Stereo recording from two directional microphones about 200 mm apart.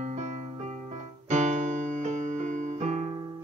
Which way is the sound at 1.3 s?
35° right (ahead or behind).